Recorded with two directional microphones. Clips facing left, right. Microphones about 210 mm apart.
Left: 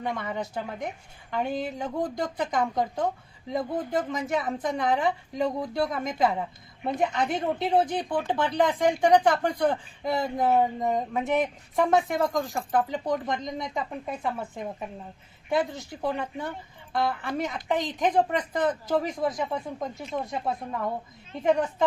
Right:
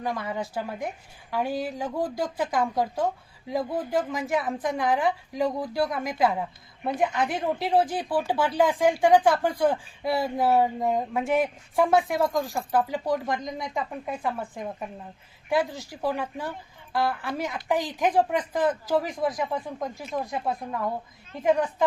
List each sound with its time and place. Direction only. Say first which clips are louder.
0.0 s speech: right 1 dB; centre (ahead or behind)